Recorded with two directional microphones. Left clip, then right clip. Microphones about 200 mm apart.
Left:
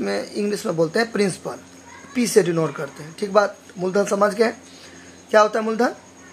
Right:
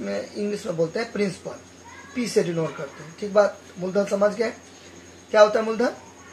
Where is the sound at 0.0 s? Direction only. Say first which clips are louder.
Left 4 dB; 55° left (ahead or behind).